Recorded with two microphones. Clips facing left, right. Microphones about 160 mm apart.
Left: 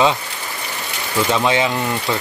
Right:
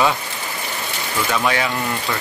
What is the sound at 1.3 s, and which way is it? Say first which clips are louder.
Speech: left 3 dB; 20° left (ahead or behind).